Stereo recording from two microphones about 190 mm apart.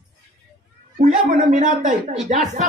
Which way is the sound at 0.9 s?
40° right (ahead or behind).